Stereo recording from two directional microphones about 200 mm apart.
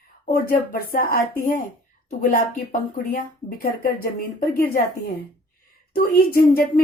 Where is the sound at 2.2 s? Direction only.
45° left (ahead or behind).